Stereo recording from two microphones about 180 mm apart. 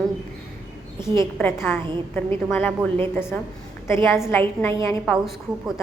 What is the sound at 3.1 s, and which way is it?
A woman's voice, 10° left (ahead or behind).